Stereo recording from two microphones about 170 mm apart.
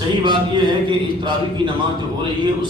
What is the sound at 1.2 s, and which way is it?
Speech, 25° right (ahead or behind).